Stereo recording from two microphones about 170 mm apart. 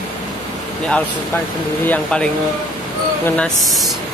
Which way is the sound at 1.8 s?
5° left (ahead or behind).